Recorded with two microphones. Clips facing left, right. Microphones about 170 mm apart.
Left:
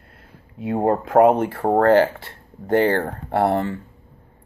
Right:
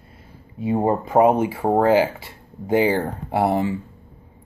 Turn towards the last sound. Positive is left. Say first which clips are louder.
# even
turn(degrees=-5)  # may be behind; listen again after turning